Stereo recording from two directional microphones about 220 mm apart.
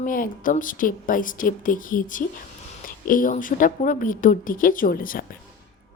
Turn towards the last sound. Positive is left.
turn(degrees=40)  # may be behind; listen again after turning